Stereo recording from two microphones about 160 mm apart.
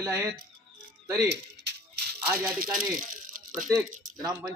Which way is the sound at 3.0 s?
55° right (ahead or behind).